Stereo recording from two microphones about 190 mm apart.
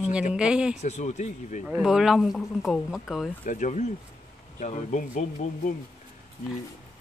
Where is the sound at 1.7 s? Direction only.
5° right (ahead or behind).